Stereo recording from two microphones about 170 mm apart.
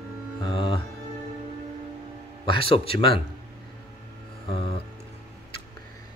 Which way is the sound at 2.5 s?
30° left (ahead or behind).